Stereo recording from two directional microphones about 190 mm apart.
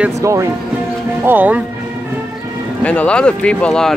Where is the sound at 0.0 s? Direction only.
15° right (ahead or behind).